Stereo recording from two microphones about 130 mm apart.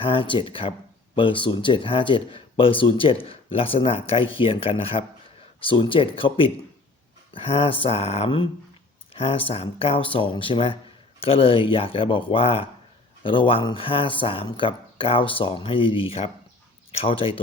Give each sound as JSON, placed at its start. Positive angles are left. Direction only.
{"t": 0.0, "sound": "speech", "side_deg": 40}